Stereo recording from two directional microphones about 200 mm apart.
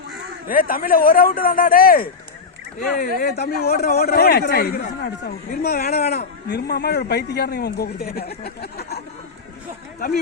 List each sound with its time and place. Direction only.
0.4 s a man's voice: 45° left (ahead or behind)